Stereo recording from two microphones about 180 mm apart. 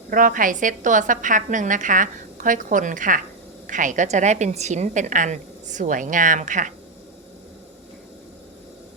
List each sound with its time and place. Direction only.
0.1 s a woman's voice: 50° right (ahead or behind)